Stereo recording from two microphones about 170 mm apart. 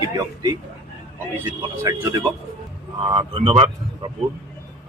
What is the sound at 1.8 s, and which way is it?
Speech, 15° right (ahead or behind).